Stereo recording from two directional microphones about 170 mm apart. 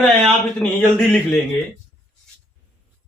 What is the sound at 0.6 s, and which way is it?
Speech, 10° left (ahead or behind).